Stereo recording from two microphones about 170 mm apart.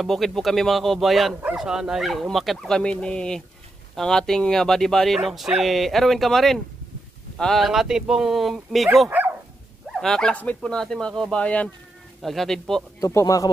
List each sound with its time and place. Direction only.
0.0 s speech: centre (ahead or behind)
13.0 s speech: 20° left (ahead or behind)